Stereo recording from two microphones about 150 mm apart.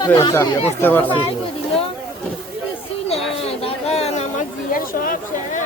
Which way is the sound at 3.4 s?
40° left (ahead or behind).